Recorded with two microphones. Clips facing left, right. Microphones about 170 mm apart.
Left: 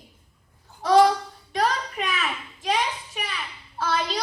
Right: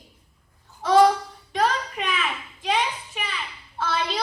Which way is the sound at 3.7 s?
40° left (ahead or behind).